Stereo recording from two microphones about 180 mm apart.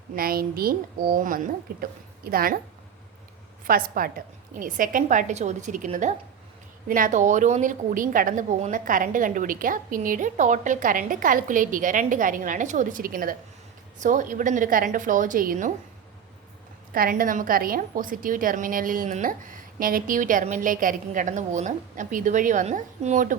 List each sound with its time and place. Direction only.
0.2 s a woman's voice: 55° right (ahead or behind)
3.7 s a woman's voice: 55° right (ahead or behind)
16.9 s a woman's voice: 55° right (ahead or behind)